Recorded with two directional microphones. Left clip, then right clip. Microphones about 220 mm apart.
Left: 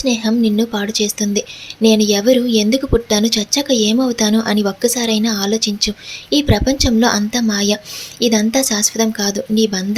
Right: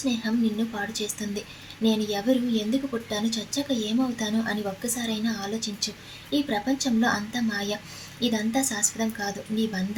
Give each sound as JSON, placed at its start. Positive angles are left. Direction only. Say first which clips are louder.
{"t": 0.0, "sound": "speech", "louder": "left 11 dB", "side_deg": 40}